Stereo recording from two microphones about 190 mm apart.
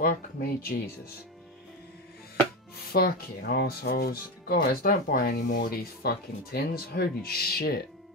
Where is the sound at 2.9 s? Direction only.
55° left (ahead or behind).